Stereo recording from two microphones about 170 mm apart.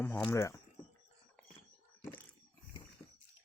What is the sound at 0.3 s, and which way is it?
Speech, 15° left (ahead or behind).